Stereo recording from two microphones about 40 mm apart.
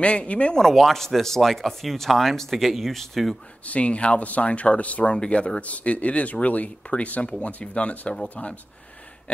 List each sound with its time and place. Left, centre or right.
0.0 s speech: left
0.6 s speech: centre
3.6 s speech: left
5.1 s speech: left